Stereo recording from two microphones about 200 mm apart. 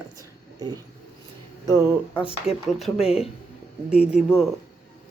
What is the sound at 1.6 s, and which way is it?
Speech, 10° right (ahead or behind).